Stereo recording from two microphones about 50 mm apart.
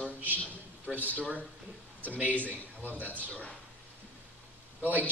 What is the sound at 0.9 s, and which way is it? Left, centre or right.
Speech, right.